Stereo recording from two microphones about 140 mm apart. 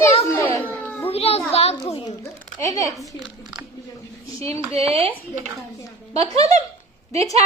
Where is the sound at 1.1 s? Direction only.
45° left (ahead or behind).